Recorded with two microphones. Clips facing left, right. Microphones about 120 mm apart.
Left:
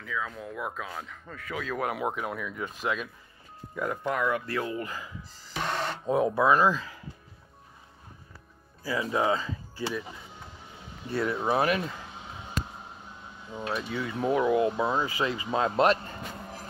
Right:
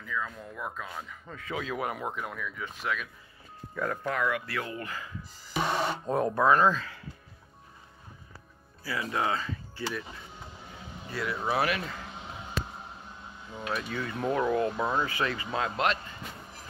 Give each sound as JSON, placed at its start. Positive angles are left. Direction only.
{"t": 0.0, "sound": "speech", "side_deg": 0}
{"t": 1.3, "sound": "speech", "side_deg": -25}
{"t": 1.8, "sound": "speech", "side_deg": 5}
{"t": 2.5, "sound": "speech", "side_deg": 20}
{"t": 5.5, "sound": "speech", "side_deg": -10}
{"t": 6.0, "sound": "speech", "side_deg": 5}
{"t": 8.8, "sound": "speech", "side_deg": 15}
{"t": 11.1, "sound": "speech", "side_deg": 30}
{"t": 13.5, "sound": "speech", "side_deg": 25}
{"t": 13.8, "sound": "speech", "side_deg": 10}
{"t": 15.6, "sound": "music", "side_deg": 30}